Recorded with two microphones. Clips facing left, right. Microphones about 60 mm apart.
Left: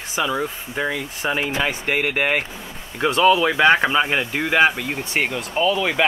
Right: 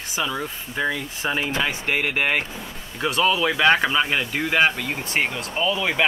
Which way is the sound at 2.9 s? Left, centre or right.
Left.